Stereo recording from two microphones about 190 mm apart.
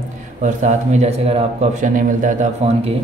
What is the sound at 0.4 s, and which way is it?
Speech, 40° right (ahead or behind).